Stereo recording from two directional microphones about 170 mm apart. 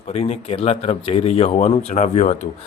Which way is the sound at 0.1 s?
35° left (ahead or behind).